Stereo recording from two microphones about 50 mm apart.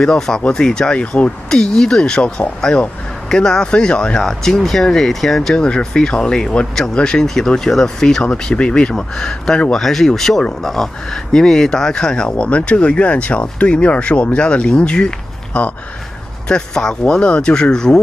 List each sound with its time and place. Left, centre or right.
0.0 s speech: centre
1.5 s speech: centre
4.2 s speech: centre
12.3 s speech: left